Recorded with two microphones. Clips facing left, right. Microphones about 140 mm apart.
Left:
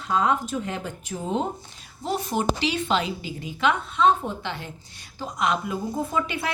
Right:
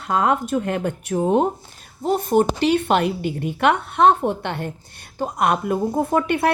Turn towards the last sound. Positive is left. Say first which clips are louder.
# right 8 dB
turn(degrees=-55)  # may be behind; listen again after turning